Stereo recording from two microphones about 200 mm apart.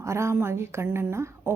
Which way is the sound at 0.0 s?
15° right (ahead or behind).